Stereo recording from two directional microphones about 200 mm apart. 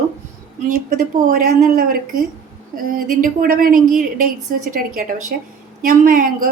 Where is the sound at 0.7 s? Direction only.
45° right (ahead or behind).